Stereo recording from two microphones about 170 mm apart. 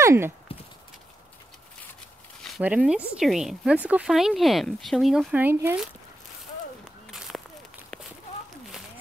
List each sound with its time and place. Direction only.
0.0 s speech: 15° right (ahead or behind)
2.6 s speech: 5° right (ahead or behind)
7.1 s a sound: centre (ahead or behind)